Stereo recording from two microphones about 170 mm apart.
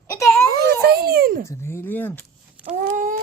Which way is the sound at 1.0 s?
60° right (ahead or behind).